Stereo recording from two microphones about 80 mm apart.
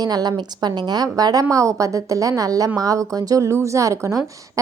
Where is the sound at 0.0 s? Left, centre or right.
Right.